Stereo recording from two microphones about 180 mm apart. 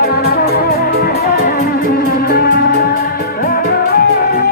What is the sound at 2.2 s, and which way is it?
Music, 55° left (ahead or behind).